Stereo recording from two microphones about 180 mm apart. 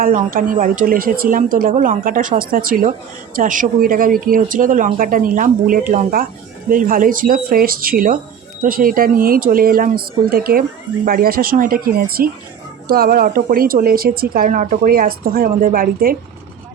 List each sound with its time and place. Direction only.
0.0 s speech: 50° right (ahead or behind)